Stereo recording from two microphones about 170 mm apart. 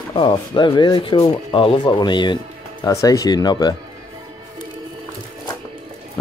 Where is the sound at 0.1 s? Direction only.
30° left (ahead or behind).